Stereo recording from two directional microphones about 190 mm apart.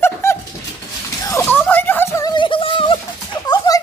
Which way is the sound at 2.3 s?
25° left (ahead or behind).